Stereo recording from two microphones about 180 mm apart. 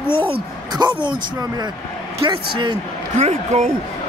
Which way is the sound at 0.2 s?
25° right (ahead or behind).